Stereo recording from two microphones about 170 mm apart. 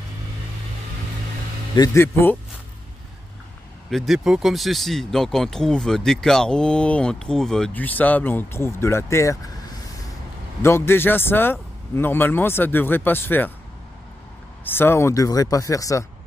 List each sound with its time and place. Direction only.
1.8 s a man's voice: 15° left (ahead or behind)
3.9 s speech: centre (ahead or behind); by 9.4 s 15° left (ahead or behind)
10.6 s a man's voice: 15° left (ahead or behind)
14.6 s speech: 15° left (ahead or behind)